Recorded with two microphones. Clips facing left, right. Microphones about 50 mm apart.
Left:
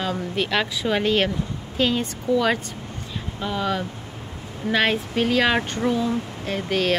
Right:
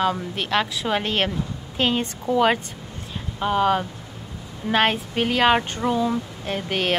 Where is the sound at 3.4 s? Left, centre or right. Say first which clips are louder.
Right 5 dB; right.